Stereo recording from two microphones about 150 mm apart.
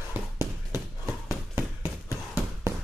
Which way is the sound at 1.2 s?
15° right (ahead or behind).